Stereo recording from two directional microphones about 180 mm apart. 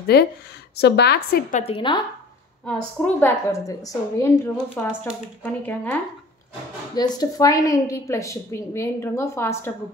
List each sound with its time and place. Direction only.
0.0 s a woman's voice: 65° left (ahead or behind)
1.5 s a woman's voice: 35° left (ahead or behind)
2.6 s a woman's voice: 5° left (ahead or behind)
4.7 s a woman's voice: 5° left (ahead or behind)
7.0 s a woman's voice: 20° left (ahead or behind)